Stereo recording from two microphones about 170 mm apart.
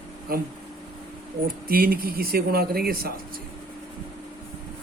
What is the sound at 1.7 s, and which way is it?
Speech, 60° right (ahead or behind).